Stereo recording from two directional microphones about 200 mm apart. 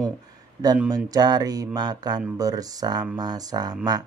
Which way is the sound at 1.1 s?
20° right (ahead or behind).